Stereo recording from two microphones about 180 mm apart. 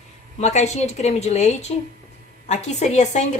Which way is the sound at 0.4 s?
40° left (ahead or behind).